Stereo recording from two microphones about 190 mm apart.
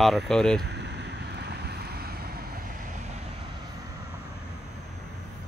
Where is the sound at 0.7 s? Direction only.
65° right (ahead or behind).